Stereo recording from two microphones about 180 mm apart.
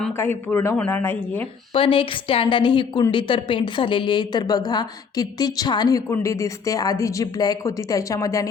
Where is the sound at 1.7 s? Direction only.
30° left (ahead or behind).